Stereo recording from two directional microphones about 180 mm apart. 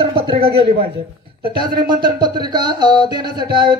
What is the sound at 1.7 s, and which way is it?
Speech, 55° right (ahead or behind).